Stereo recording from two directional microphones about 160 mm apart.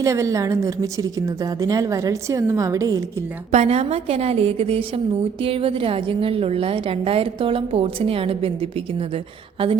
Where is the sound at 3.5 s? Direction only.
40° right (ahead or behind).